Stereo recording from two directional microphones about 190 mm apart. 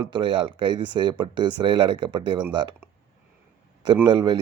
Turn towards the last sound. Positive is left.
turn(degrees=-20)  # may be behind; listen again after turning